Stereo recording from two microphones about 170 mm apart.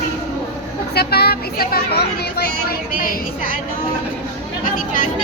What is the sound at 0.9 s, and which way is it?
Speech, 70° left (ahead or behind).